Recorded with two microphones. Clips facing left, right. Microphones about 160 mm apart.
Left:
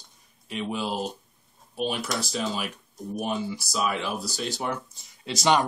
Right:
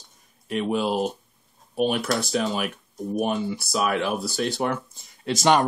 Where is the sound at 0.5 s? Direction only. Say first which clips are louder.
Right 6 dB; 55° right (ahead or behind).